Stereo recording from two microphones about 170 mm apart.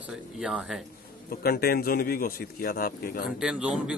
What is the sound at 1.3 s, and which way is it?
A man's voice, 60° left (ahead or behind).